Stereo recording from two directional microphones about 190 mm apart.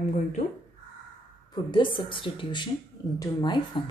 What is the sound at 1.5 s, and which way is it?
Speech, 25° left (ahead or behind).